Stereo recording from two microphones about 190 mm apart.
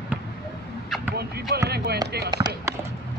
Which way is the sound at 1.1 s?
55° right (ahead or behind).